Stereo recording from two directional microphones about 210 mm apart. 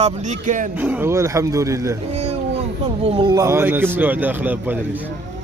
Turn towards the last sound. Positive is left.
turn(degrees=-10)  # may be behind; listen again after turning